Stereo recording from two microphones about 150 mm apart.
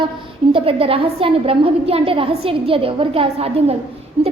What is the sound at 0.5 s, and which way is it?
A woman's voice, 35° right (ahead or behind).